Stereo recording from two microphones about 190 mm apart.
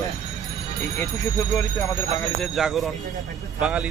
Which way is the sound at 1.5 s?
15° left (ahead or behind).